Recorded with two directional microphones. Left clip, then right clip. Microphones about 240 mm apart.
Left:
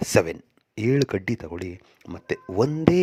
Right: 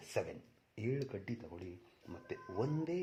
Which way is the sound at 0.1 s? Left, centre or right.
Left.